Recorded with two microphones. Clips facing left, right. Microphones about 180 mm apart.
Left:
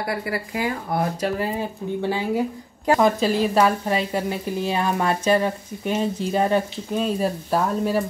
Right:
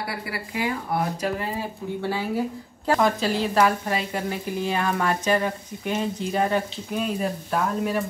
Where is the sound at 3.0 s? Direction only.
15° left (ahead or behind); by 8.0 s 30° left (ahead or behind).